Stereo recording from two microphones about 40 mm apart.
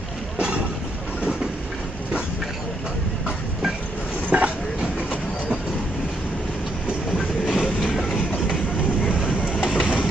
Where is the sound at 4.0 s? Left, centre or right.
Left.